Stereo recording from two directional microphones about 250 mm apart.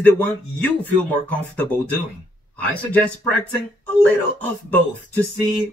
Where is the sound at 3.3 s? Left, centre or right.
Centre.